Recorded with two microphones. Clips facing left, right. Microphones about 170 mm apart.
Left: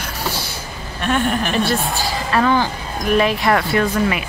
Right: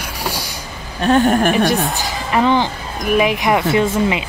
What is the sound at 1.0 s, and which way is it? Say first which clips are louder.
Speech: right 6 dB; 40° right (ahead or behind).